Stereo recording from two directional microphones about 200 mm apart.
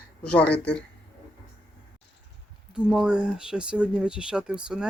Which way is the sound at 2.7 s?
5° right (ahead or behind).